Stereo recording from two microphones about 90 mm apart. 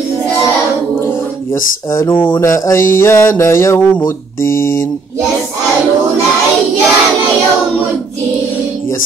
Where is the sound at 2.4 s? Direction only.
35° left (ahead or behind).